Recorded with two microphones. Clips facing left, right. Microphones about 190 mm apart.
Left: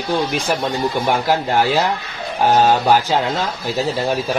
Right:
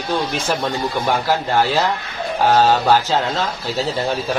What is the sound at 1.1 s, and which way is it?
Speech, 15° left (ahead or behind).